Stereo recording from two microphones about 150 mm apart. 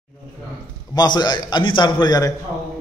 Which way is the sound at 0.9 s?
30° left (ahead or behind).